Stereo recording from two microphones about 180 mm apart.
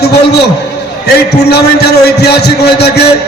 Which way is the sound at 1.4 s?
65° left (ahead or behind).